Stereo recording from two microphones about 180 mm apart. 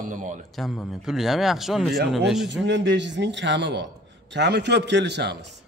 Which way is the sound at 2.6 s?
75° right (ahead or behind).